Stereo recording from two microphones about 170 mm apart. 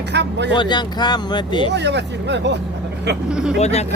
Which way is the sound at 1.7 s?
90° right.